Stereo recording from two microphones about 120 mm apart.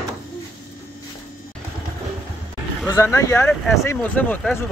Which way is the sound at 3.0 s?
25° left (ahead or behind).